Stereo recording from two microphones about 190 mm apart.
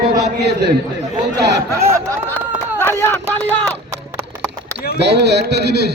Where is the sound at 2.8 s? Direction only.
10° left (ahead or behind).